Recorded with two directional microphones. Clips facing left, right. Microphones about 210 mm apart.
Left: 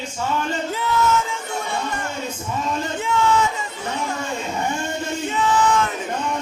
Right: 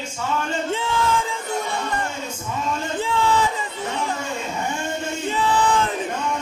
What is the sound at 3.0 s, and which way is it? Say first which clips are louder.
Music: left 1 dB; 35° right (ahead or behind).